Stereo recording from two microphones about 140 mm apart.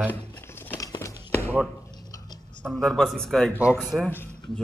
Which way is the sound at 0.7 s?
25° left (ahead or behind).